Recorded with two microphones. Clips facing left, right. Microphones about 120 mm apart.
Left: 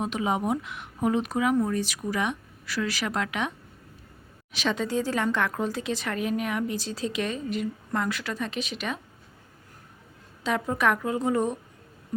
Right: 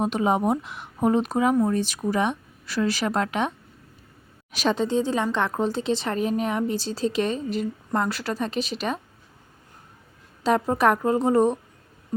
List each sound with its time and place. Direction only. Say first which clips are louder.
0.0 s a woman's voice: right 5 dB; 40° right (ahead or behind)
4.5 s a woman's voice: right 4 dB; 40° right (ahead or behind)
4.8 s a woman's voice: right 2 dB; 25° right (ahead or behind)
10.4 s a woman's voice: right 5 dB; 35° right (ahead or behind)